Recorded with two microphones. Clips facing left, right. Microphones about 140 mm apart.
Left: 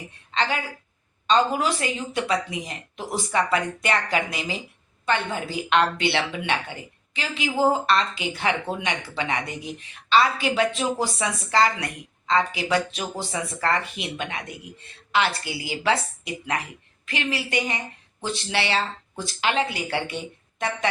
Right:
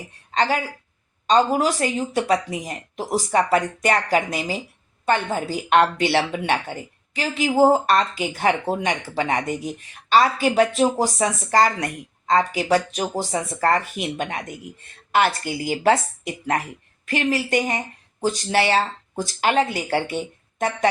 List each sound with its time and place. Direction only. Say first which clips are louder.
0.3 s a woman's voice: right 4 dB; 45° right (ahead or behind)